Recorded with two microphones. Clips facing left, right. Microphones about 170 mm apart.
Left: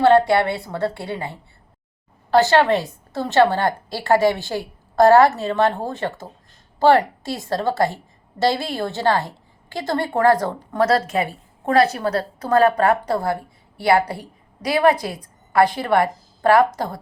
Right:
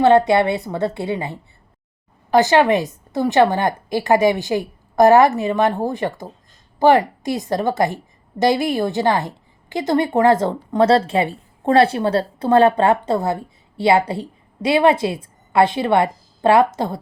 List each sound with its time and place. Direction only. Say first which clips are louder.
0.0 s a woman's voice: right 1 dB; 20° right (ahead or behind)